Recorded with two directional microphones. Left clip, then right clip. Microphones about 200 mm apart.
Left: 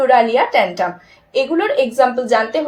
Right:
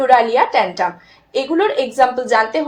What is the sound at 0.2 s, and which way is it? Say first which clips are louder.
A woman's voice: left 1 dB; 25° right (ahead or behind).